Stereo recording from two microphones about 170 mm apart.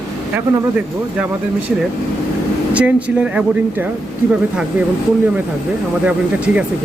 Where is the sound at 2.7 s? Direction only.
5° right (ahead or behind).